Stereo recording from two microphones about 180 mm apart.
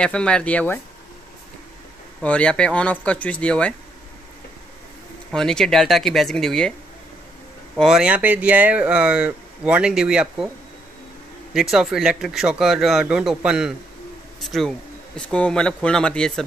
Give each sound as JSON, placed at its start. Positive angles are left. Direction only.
{"t": 0.0, "sound": "speech", "side_deg": 5}
{"t": 2.2, "sound": "speech", "side_deg": 5}
{"t": 5.3, "sound": "speech", "side_deg": 5}
{"t": 7.7, "sound": "speech", "side_deg": 0}
{"t": 11.5, "sound": "speech", "side_deg": 0}